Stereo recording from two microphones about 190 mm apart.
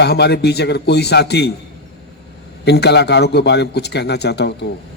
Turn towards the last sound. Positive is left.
turn(degrees=60)  # may be behind; listen again after turning